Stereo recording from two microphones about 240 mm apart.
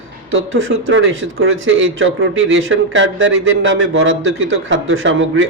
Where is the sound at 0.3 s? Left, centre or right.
Right.